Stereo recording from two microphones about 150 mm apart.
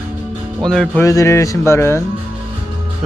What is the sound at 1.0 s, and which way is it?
Speech, 20° left (ahead or behind).